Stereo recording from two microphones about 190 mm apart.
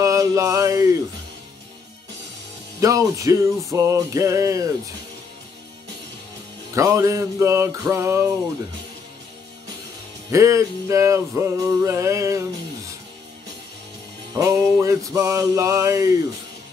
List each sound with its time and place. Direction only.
0.0 s a sound: 15° right (ahead or behind)
2.8 s male singing: 15° right (ahead or behind)
6.7 s male singing: 15° right (ahead or behind)
10.3 s male singing: 15° right (ahead or behind)
14.3 s male singing: 20° right (ahead or behind)